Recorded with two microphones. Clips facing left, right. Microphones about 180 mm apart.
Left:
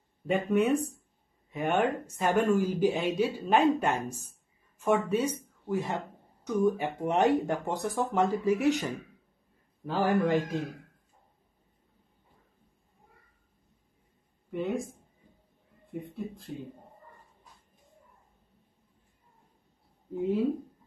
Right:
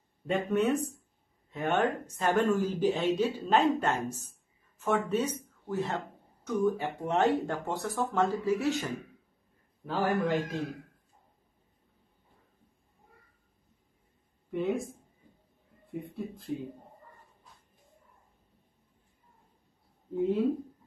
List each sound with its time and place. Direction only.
0.3 s speech: 10° left (ahead or behind)
9.8 s a man's voice: centre (ahead or behind)
14.5 s a man's voice: centre (ahead or behind)
16.5 s a man's voice: centre (ahead or behind)